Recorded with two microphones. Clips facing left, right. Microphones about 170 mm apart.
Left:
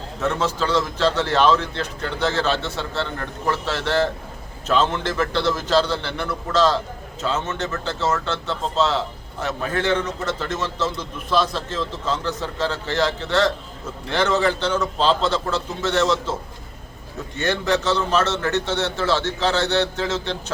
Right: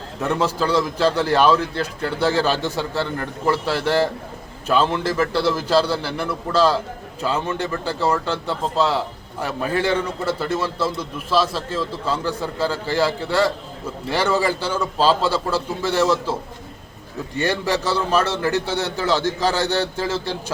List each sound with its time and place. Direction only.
0.2 s a man's voice: 10° right (ahead or behind)